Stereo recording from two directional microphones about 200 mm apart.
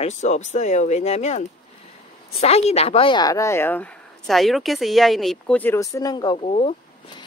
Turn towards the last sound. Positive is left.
turn(degrees=30)  # may be behind; listen again after turning